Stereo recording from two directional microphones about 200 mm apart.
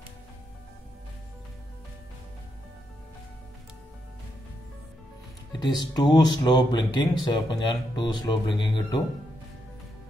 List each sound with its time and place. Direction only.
5.5 s speech: 20° left (ahead or behind)